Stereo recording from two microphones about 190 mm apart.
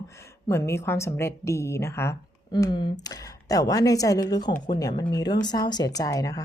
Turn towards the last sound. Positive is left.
turn(degrees=20)  # may be behind; listen again after turning